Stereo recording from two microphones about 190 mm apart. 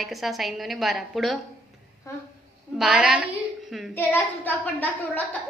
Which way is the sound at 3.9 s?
10° left (ahead or behind).